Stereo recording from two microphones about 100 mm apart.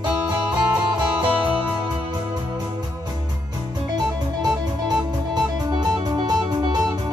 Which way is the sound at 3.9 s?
45° right (ahead or behind).